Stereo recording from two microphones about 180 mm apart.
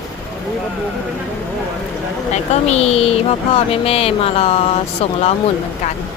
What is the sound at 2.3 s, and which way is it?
Speech, 40° left (ahead or behind).